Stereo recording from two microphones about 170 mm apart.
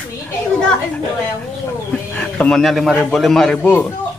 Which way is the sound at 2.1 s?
10° left (ahead or behind).